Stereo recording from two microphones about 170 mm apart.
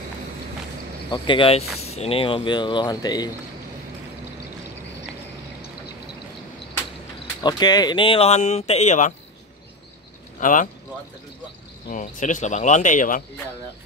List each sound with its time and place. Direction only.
1.1 s speech: 30° left (ahead or behind)
7.4 s speech: 25° left (ahead or behind); by 9.1 s 45° left (ahead or behind)
10.4 s speech: 50° left (ahead or behind)
11.9 s speech: 50° left (ahead or behind)